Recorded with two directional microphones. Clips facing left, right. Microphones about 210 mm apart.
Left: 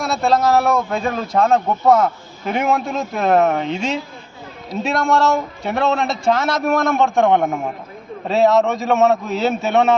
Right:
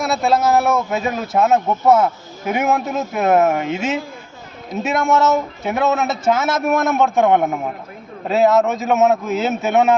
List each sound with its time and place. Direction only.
0.0 s a man's voice: centre (ahead or behind)